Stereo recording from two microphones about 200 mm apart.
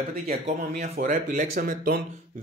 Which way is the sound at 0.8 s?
40° right (ahead or behind).